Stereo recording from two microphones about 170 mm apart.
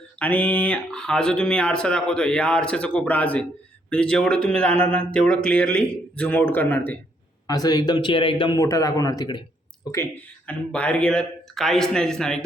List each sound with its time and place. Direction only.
0.2 s speech: 10° left (ahead or behind)
7.4 s speech: 20° left (ahead or behind)
8.5 s speech: 20° left (ahead or behind); by 12.4 s 5° left (ahead or behind)